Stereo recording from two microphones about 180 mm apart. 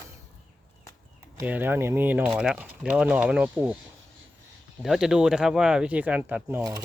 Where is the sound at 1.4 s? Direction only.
10° right (ahead or behind).